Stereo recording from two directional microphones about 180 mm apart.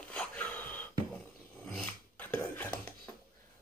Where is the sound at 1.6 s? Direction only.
5° left (ahead or behind).